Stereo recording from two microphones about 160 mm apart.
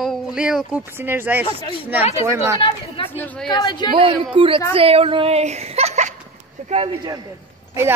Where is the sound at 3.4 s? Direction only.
25° left (ahead or behind).